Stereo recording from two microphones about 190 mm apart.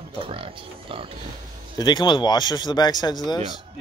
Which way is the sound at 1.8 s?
25° left (ahead or behind).